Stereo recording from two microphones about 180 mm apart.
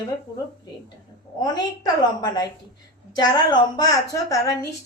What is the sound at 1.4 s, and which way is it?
A woman's voice, 20° left (ahead or behind).